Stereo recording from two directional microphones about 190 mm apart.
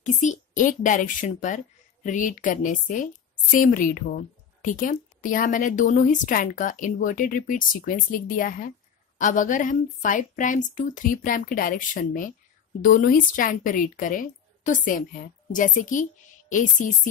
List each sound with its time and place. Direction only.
0.0 s a woman's voice: 40° left (ahead or behind)